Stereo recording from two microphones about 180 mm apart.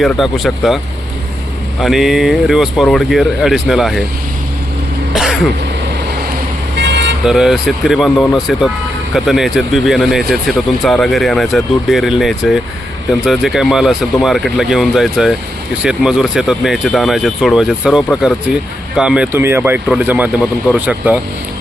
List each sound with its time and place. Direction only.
0.0 s speech: centre (ahead or behind)
1.8 s speech: centre (ahead or behind)
5.1 s throat clearing: centre (ahead or behind)
6.7 s vehicle: 80° right
7.3 s speech: 5° right (ahead or behind)